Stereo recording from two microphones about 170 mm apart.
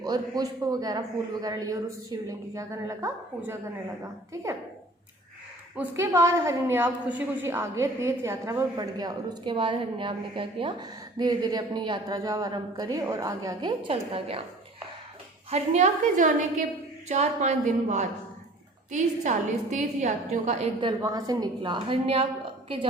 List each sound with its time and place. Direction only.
0.0 s a woman's voice: 20° right (ahead or behind)
5.7 s a woman's voice: 10° right (ahead or behind); by 14.4 s 35° right (ahead or behind)
15.4 s a woman's voice: 40° right (ahead or behind)
20.8 s a woman's voice: 20° right (ahead or behind)